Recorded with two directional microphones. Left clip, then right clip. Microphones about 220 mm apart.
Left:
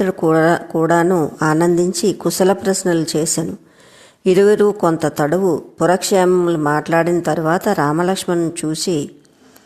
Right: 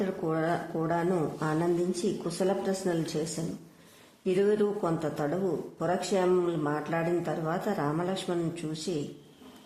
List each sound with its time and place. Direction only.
0.0 s speech: 35° left (ahead or behind)